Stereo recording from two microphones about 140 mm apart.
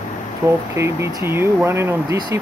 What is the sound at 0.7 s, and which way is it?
Speech, 20° right (ahead or behind).